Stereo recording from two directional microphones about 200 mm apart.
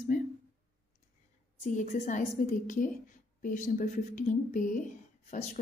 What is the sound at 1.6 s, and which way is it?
Speech, 35° left (ahead or behind).